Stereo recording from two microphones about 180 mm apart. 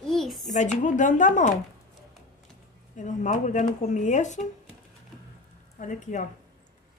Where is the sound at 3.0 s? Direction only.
45° left (ahead or behind).